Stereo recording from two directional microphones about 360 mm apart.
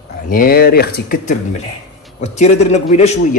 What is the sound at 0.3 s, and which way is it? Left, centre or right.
A man's voice, left.